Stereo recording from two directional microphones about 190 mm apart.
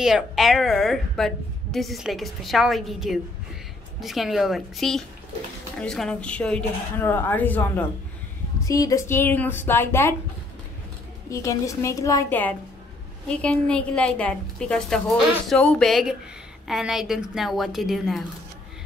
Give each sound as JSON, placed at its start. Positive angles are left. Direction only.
{"t": 0.0, "sound": "a woman's voice", "side_deg": 0}
{"t": 11.2, "sound": "a woman's voice", "side_deg": 15}